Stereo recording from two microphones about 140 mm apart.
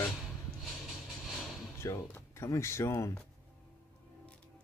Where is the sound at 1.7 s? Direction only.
20° left (ahead or behind).